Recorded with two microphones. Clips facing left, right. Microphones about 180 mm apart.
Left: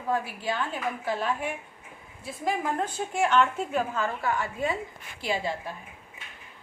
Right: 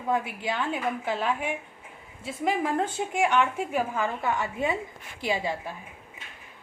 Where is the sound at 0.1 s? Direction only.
20° right (ahead or behind).